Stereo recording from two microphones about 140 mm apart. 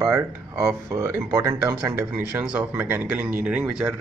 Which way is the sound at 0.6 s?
20° right (ahead or behind).